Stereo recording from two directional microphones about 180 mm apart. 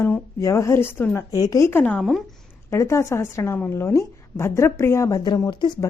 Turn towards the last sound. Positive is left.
turn(degrees=25)  # may be behind; listen again after turning